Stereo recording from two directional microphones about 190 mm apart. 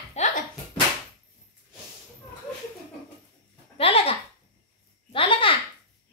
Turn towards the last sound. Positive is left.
turn(degrees=25)  # may be behind; listen again after turning